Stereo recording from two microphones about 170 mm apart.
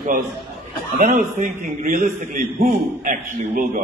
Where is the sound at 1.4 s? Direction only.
45° right (ahead or behind).